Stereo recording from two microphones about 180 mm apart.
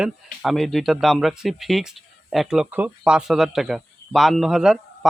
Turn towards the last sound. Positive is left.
turn(degrees=0)  # may be behind; listen again after turning